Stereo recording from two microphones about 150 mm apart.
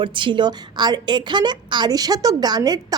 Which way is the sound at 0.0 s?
35° right (ahead or behind).